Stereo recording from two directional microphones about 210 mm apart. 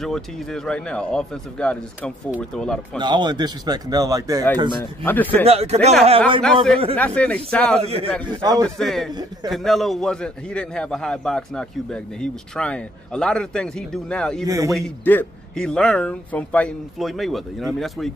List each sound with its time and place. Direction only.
0.0 s a man's voice: centre (ahead or behind)
3.0 s a man's voice: 20° right (ahead or behind)
5.0 s speech: 10° left (ahead or behind)
5.4 s a man's voice: 30° right (ahead or behind)
6.4 s a man's voice: centre (ahead or behind)
7.8 s a man's voice: 30° right (ahead or behind)
8.6 s a man's voice: centre (ahead or behind)
14.4 s speech: 15° right (ahead or behind)
14.7 s a man's voice: 5° left (ahead or behind)